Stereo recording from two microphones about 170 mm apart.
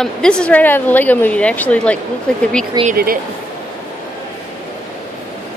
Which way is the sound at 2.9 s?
60° right (ahead or behind).